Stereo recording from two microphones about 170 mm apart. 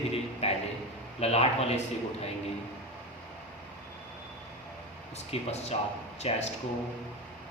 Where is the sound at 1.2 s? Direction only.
35° left (ahead or behind).